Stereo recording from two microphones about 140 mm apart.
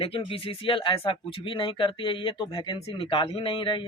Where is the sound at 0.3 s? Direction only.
40° left (ahead or behind).